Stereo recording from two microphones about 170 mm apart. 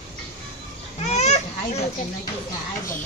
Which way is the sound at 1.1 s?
40° left (ahead or behind).